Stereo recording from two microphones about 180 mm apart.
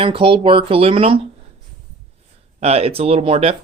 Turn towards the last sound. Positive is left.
turn(degrees=-30)  # may be behind; listen again after turning